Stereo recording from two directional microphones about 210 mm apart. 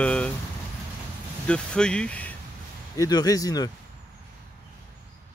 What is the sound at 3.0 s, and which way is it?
Speech, 20° left (ahead or behind).